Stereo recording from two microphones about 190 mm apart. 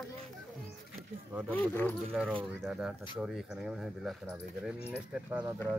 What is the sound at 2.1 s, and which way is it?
Speech, 5° right (ahead or behind).